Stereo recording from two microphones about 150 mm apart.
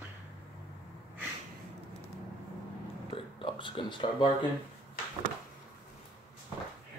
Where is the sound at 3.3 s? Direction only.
35° left (ahead or behind).